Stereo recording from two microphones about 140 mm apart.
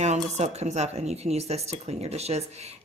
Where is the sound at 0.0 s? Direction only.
55° right (ahead or behind).